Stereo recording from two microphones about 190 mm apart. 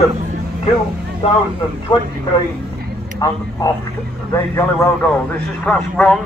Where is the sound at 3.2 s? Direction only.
20° left (ahead or behind).